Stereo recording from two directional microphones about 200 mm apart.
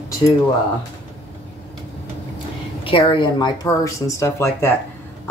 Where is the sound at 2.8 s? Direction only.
25° left (ahead or behind).